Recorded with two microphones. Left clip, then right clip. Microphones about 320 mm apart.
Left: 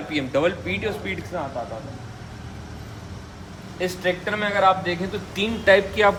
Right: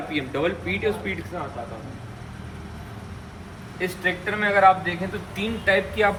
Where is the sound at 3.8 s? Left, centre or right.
Left.